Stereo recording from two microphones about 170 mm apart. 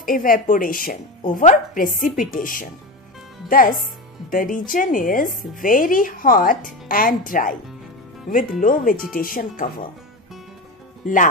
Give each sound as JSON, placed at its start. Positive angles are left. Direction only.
{"t": 0.0, "sound": "a woman's voice", "side_deg": 55}
{"t": 11.0, "sound": "speech", "side_deg": 55}